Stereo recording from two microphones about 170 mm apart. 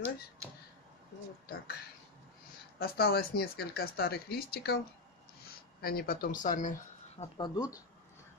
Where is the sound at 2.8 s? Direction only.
65° left (ahead or behind).